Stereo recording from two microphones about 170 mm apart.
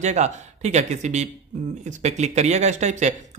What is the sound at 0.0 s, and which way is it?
Speech, 40° right (ahead or behind).